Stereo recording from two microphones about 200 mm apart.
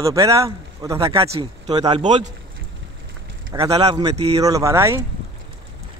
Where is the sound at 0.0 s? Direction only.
15° right (ahead or behind).